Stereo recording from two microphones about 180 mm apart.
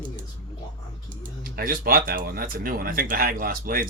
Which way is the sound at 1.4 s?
55° right (ahead or behind).